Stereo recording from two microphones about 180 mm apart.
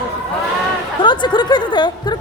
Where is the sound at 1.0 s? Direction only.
25° left (ahead or behind).